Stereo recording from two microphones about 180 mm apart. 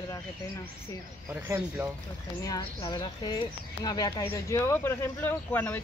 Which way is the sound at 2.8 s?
25° left (ahead or behind).